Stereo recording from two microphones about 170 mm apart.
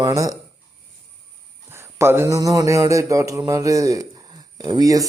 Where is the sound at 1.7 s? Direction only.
15° right (ahead or behind).